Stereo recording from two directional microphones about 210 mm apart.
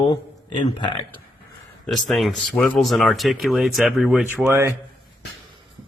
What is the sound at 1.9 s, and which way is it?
Speech, centre (ahead or behind).